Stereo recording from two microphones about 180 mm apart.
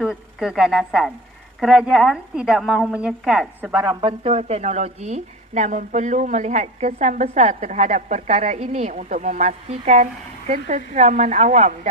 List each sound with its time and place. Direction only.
0.0 s a woman's voice: centre (ahead or behind)
3.9 s a woman's voice: 30° right (ahead or behind)